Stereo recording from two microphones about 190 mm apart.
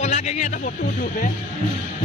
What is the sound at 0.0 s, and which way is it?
Speech, 35° left (ahead or behind).